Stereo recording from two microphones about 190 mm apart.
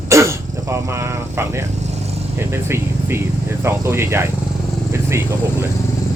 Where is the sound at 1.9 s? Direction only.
35° right (ahead or behind).